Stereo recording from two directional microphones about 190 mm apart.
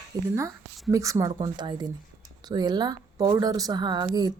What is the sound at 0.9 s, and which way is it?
Speech, 15° right (ahead or behind).